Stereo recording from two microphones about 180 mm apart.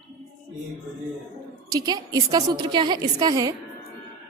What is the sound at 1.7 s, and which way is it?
A woman's voice, 20° right (ahead or behind).